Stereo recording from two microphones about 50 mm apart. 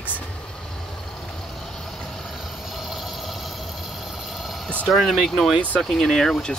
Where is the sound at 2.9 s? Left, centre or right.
Centre.